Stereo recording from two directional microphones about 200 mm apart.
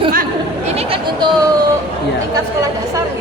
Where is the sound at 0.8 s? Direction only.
30° right (ahead or behind).